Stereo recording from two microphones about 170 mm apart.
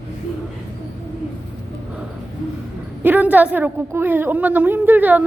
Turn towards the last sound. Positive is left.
turn(degrees=-10)  # may be behind; listen again after turning